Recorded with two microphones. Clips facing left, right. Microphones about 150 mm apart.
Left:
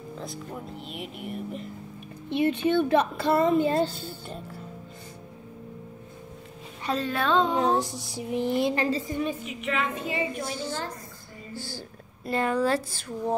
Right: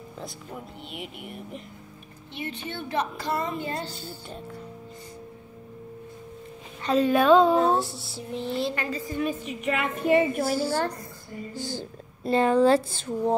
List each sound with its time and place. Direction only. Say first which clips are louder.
0.2 s speech: even; centre (ahead or behind)
2.3 s a woman's voice: left 12 dB; 60° left (ahead or behind)
7.0 s a woman's voice: right 7 dB; 15° right (ahead or behind)
7.6 s a woman's voice: right 1 dB; 15° left (ahead or behind)
9.4 s a woman's voice: right 2 dB; 40° right (ahead or behind)
9.8 s a woman's voice: right 8 dB; 55° right (ahead or behind)
10.5 s a woman's voice: right 7 dB; 10° right (ahead or behind)
11.5 s a woman's voice: right 3 dB; 20° right (ahead or behind)